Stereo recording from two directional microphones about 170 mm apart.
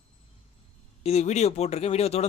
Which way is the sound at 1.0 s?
40° left (ahead or behind).